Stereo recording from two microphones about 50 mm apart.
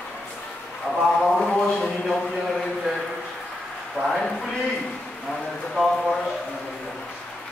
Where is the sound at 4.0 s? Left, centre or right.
Right.